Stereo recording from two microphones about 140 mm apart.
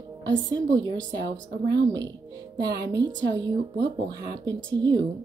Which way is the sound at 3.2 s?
30° right (ahead or behind).